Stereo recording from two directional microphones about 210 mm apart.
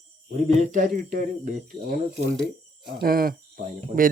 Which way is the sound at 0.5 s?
35° right (ahead or behind).